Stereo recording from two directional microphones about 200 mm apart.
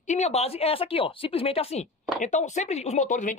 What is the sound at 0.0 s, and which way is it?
Speech, 35° left (ahead or behind).